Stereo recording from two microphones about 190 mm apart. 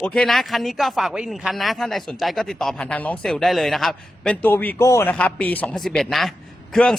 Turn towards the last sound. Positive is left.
turn(degrees=0)  # may be behind; listen again after turning